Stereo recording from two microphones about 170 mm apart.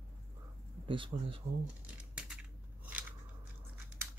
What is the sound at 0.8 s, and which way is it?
Speech, 30° right (ahead or behind).